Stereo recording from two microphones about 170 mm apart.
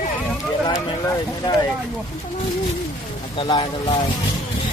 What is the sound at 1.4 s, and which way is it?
Speech, 25° left (ahead or behind).